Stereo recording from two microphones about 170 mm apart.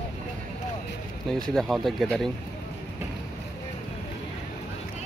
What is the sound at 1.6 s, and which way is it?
Speech, centre (ahead or behind).